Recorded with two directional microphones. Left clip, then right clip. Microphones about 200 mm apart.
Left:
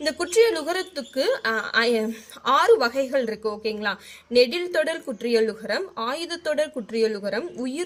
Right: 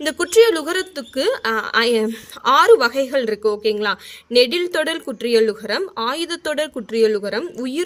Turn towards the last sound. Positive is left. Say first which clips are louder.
# right 5 dB
turn(degrees=-45)  # may be behind; listen again after turning